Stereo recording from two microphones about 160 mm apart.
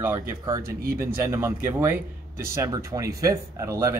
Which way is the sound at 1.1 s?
15° right (ahead or behind).